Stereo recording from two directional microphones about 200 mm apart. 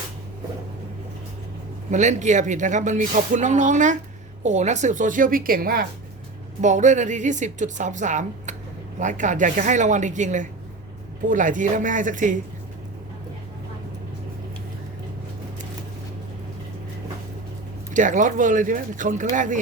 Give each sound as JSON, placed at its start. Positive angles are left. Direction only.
{"t": 1.9, "sound": "speech", "side_deg": -35}
{"t": 17.9, "sound": "speech", "side_deg": -40}